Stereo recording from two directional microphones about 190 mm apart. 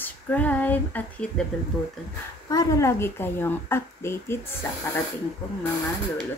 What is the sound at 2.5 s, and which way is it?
A woman's voice, 15° left (ahead or behind).